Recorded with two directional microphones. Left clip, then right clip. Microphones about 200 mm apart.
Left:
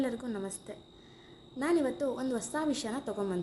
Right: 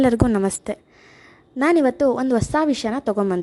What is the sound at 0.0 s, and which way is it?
A woman's voice, 55° right (ahead or behind).